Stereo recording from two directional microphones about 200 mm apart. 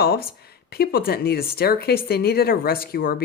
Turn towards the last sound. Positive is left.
turn(degrees=50)  # may be behind; listen again after turning